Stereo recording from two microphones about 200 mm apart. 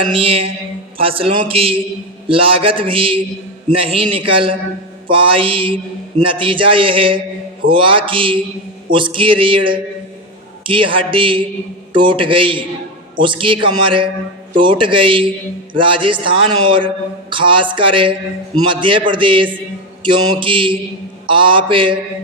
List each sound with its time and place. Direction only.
0.0 s a man's voice: 25° right (ahead or behind)